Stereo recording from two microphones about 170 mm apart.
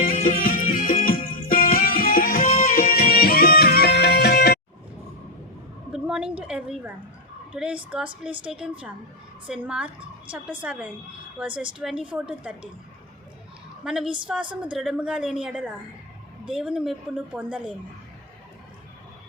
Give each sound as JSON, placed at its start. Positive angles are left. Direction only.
{"t": 0.0, "sound": "music", "side_deg": 50}
{"t": 5.9, "sound": "a sound", "side_deg": -5}
{"t": 7.5, "sound": "a woman's voice", "side_deg": -5}
{"t": 13.8, "sound": "a woman's voice", "side_deg": -5}